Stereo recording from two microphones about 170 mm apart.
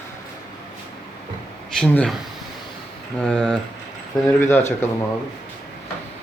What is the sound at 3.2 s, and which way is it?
Speech, 5° left (ahead or behind).